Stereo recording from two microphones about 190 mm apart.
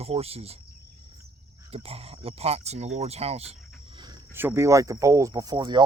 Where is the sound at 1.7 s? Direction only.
30° right (ahead or behind).